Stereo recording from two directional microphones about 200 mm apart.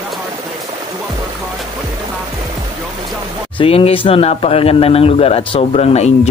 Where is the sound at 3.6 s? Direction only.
30° left (ahead or behind).